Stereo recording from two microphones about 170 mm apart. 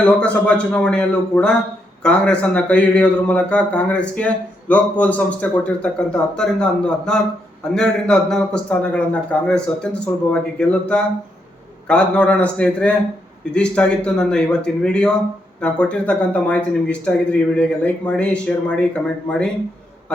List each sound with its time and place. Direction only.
0.0 s a man's voice: 5° left (ahead or behind)